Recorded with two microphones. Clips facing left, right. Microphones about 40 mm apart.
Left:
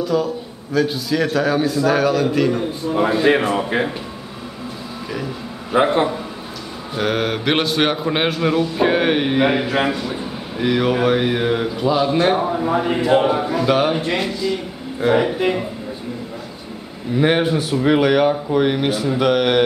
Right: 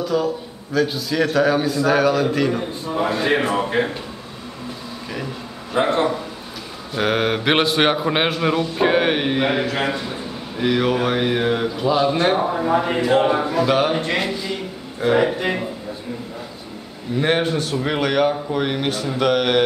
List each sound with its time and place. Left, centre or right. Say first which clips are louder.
0.0 s a man's voice: left 1 dB; centre
5.7 s a man's voice: left 2 dB; centre
7.0 s a man's voice: right 1 dB; centre
17.1 s a man's voice: left 3 dB; centre